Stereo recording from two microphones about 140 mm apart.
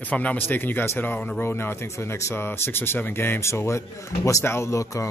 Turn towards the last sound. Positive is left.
turn(degrees=20)  # may be behind; listen again after turning